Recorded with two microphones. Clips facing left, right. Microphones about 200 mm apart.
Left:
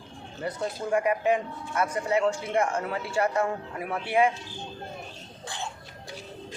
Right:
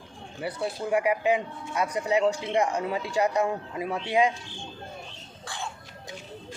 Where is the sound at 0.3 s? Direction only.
10° right (ahead or behind).